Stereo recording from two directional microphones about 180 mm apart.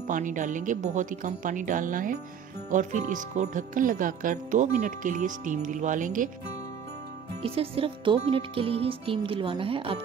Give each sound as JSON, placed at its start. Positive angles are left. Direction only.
{"t": 0.0, "sound": "speech", "side_deg": -45}
{"t": 7.4, "sound": "speech", "side_deg": -30}